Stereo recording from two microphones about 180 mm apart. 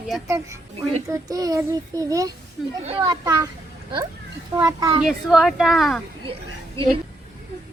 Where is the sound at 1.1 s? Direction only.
20° right (ahead or behind).